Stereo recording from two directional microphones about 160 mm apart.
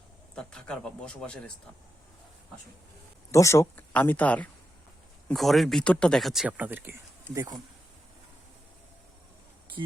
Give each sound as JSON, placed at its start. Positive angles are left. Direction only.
{"t": 0.3, "sound": "speech", "side_deg": 5}
{"t": 3.3, "sound": "speech", "side_deg": 20}
{"t": 9.8, "sound": "speech", "side_deg": -30}